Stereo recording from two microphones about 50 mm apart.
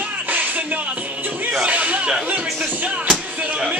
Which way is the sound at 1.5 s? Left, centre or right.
Right.